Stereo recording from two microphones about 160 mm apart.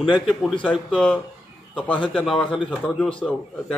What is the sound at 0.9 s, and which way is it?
A man's voice, 5° left (ahead or behind).